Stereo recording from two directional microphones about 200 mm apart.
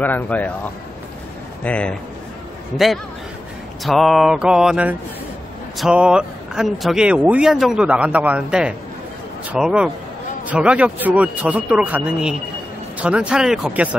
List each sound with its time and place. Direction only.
0.0 s speech: 10° left (ahead or behind)
1.6 s speech: 5° left (ahead or behind)
3.8 s speech: centre (ahead or behind)